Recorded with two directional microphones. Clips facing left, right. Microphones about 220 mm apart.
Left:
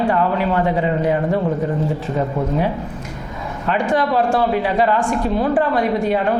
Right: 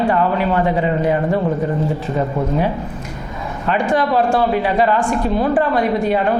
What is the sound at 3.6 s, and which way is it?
A man's voice, 20° right (ahead or behind).